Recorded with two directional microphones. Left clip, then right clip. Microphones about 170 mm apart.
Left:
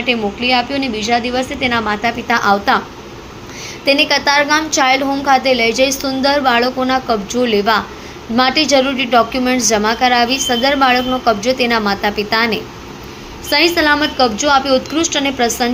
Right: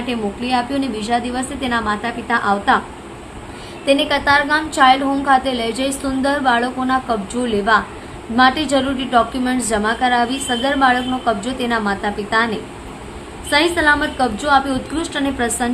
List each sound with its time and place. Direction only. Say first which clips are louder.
0.0 s a woman's voice: left 7 dB; 10° left (ahead or behind)
1.9 s a woman's voice: left 4 dB; 25° left (ahead or behind)
3.8 s a woman's voice: left 2 dB; 15° left (ahead or behind)